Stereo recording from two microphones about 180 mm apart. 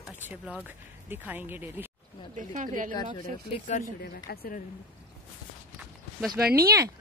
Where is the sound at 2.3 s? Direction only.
45° right (ahead or behind).